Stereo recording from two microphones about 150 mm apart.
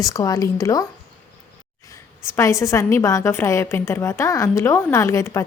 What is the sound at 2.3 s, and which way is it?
A woman's voice, 20° left (ahead or behind).